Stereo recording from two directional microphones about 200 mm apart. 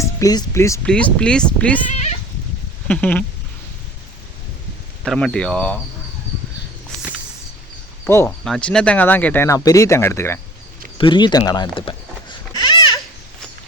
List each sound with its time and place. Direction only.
0.0 s speech: 20° left (ahead or behind)
2.8 s a sound: 5° left (ahead or behind)
5.0 s speech: centre (ahead or behind)
8.0 s speech: 10° left (ahead or behind)
10.9 s sheep: 25° left (ahead or behind)